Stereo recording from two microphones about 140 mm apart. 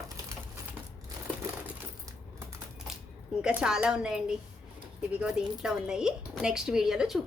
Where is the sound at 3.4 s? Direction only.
10° right (ahead or behind).